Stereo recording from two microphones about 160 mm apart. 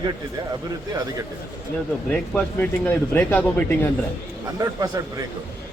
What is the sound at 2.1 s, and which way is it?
Speech, 5° left (ahead or behind).